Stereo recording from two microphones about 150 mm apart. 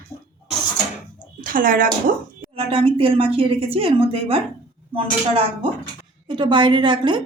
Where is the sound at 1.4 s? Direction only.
65° right (ahead or behind).